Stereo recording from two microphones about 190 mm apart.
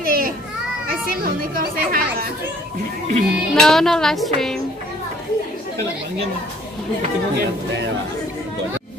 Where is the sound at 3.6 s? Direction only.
Centre (ahead or behind).